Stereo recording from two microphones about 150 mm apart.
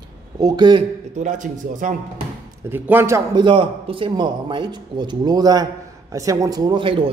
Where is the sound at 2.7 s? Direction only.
15° right (ahead or behind).